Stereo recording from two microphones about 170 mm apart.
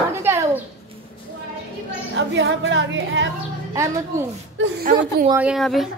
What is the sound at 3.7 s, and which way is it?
Speech, 20° right (ahead or behind).